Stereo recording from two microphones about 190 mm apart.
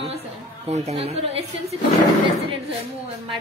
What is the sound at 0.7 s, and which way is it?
Speech, 35° right (ahead or behind).